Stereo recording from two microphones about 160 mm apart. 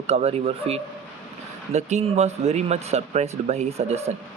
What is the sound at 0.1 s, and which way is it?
Speech, 40° right (ahead or behind).